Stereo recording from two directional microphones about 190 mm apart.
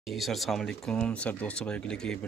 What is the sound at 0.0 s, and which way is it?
Speech, centre (ahead or behind).